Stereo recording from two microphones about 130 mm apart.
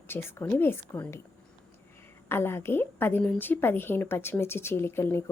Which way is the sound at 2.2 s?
20° left (ahead or behind).